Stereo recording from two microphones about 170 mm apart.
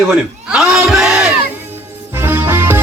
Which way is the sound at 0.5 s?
Centre (ahead or behind).